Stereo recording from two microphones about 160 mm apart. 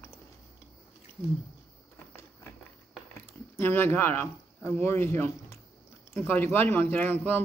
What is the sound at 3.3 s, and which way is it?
A man's voice, 15° left (ahead or behind).